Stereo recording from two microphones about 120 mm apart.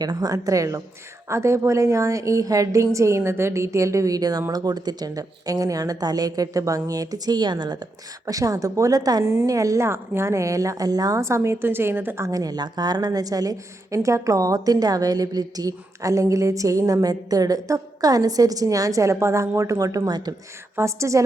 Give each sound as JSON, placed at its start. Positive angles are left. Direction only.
{"t": 0.0, "sound": "a woman's voice", "side_deg": -35}
{"t": 20.7, "sound": "a woman's voice", "side_deg": -25}